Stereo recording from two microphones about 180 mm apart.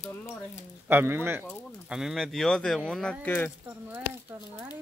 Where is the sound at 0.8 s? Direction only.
10° right (ahead or behind).